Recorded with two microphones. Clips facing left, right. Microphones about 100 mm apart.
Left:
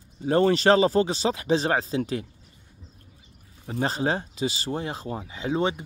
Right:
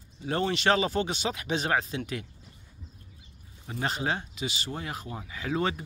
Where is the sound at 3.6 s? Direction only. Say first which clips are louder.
Left 5 dB; 35° left (ahead or behind).